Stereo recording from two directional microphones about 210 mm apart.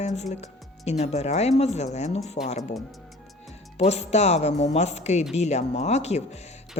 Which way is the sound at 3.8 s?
30° left (ahead or behind).